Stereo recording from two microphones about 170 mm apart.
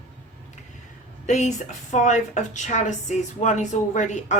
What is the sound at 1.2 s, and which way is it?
A woman's voice, 45° left (ahead or behind).